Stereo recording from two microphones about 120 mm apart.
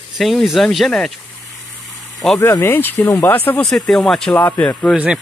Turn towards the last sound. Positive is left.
turn(degrees=-10)  # may be behind; listen again after turning